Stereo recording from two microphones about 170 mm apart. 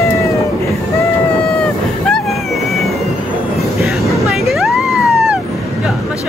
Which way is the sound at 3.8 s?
Centre (ahead or behind).